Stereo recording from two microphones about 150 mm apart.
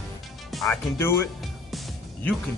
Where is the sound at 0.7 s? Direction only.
15° left (ahead or behind).